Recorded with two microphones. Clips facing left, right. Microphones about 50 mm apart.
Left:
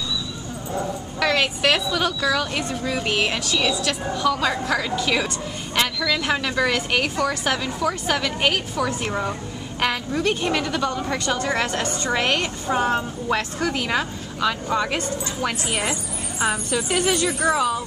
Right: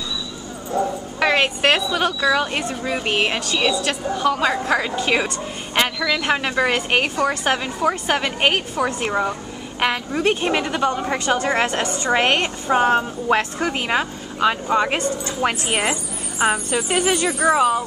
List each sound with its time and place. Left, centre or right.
1.2 s a woman's voice: right
16.9 s speech: centre